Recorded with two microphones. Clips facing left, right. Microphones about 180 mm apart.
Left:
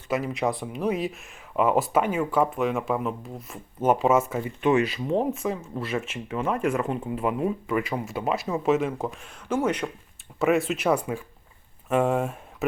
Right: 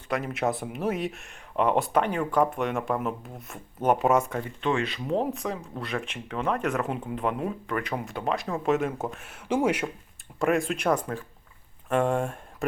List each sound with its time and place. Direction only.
0.1 s speech: centre (ahead or behind)
4.9 s speech: centre (ahead or behind)
10.4 s speech: 5° left (ahead or behind)